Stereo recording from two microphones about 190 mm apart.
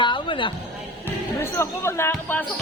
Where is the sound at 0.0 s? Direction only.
25° left (ahead or behind).